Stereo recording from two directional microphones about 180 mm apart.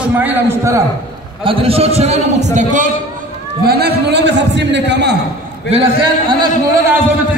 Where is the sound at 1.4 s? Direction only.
30° right (ahead or behind).